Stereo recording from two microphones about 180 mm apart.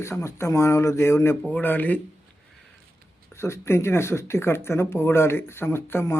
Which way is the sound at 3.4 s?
15° left (ahead or behind).